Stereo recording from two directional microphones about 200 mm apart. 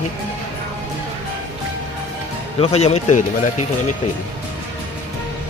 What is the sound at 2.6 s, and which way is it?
Speech, 30° left (ahead or behind).